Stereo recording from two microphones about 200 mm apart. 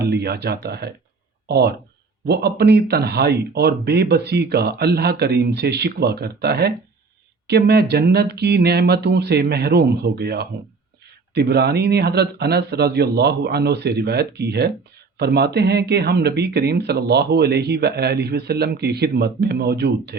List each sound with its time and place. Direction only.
0.0 s speech: 55° right (ahead or behind)